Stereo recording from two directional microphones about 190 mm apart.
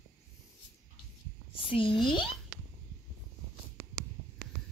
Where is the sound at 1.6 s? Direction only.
25° left (ahead or behind).